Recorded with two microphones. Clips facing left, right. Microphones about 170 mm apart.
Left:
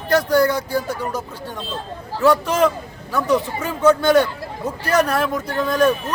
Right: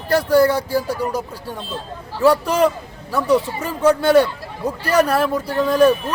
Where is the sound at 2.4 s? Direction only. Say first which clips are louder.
Right 1 dB; 10° right (ahead or behind).